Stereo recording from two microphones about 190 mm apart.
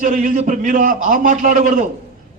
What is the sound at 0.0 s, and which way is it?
A man's voice, 45° right (ahead or behind).